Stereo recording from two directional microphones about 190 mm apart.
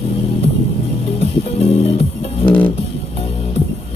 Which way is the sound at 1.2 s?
35° left (ahead or behind).